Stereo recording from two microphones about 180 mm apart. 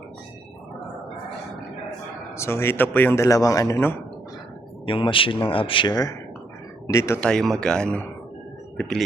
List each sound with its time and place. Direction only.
2.3 s a man's voice: 15° left (ahead or behind)
4.9 s a man's voice: 30° left (ahead or behind)
7.2 s speech: 5° left (ahead or behind)